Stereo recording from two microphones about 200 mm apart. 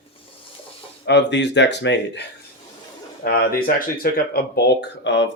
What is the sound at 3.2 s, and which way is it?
Speech, 50° left (ahead or behind).